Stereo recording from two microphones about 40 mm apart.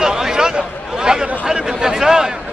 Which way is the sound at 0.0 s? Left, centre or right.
Centre.